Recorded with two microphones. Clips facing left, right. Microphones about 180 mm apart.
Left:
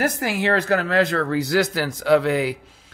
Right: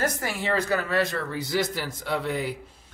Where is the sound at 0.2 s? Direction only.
90° left.